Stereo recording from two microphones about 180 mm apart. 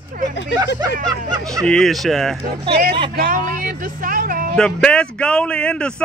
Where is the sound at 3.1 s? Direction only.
50° right (ahead or behind).